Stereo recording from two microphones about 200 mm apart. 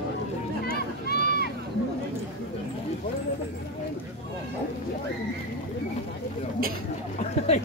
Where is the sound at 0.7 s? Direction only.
50° left (ahead or behind).